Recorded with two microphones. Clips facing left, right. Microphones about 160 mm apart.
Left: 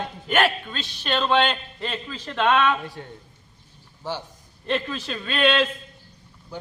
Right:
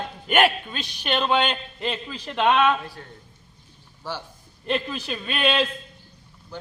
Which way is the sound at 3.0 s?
15° left (ahead or behind).